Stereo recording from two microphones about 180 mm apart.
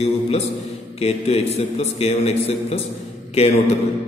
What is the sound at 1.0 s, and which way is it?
A man's voice, 35° left (ahead or behind).